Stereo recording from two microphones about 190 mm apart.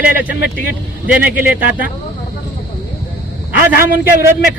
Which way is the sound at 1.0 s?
10° right (ahead or behind).